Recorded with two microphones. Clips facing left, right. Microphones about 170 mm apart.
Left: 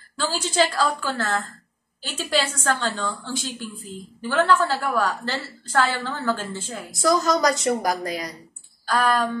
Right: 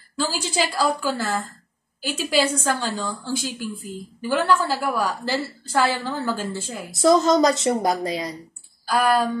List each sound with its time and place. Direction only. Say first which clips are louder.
0.1 s a woman's voice: right 1 dB; 10° right (ahead or behind)
7.0 s a woman's voice: right 4 dB; 25° right (ahead or behind)
8.8 s a woman's voice: right 2 dB; 10° right (ahead or behind)